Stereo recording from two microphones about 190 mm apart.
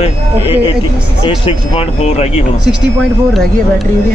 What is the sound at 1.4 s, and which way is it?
Speech, 35° left (ahead or behind).